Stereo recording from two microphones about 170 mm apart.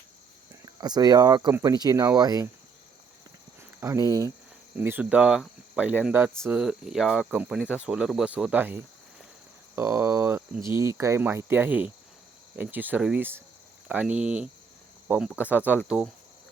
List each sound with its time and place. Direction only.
0.6 s speech: 25° right (ahead or behind)
3.8 s speech: 15° right (ahead or behind)